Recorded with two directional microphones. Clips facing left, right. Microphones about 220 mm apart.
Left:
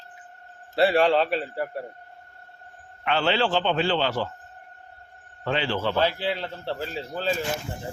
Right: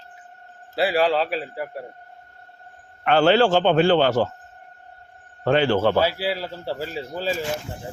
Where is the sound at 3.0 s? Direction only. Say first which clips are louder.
Right 7 dB; 45° right (ahead or behind).